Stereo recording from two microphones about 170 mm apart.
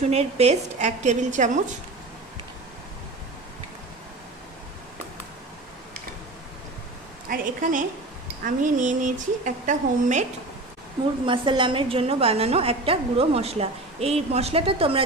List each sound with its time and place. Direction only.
0.1 s a woman's voice: 40° right (ahead or behind)
7.2 s a woman's voice: 50° right (ahead or behind)
11.2 s a woman's voice: 30° right (ahead or behind)